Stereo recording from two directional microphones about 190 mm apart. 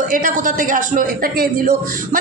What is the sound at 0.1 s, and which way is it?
Speech, 45° right (ahead or behind).